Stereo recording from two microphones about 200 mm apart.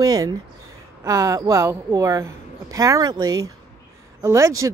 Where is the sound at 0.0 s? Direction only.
20° right (ahead or behind).